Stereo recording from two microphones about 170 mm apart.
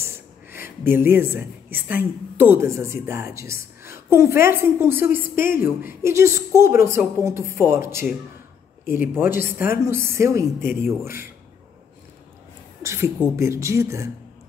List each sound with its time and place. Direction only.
0.0 s a woman's voice: 15° right (ahead or behind)
9.1 s a woman's voice: 15° right (ahead or behind)
12.8 s a sound: 15° right (ahead or behind)
13.4 s a woman's voice: 15° right (ahead or behind)